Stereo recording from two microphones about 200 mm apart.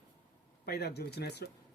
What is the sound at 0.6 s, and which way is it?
Speech, 50° left (ahead or behind).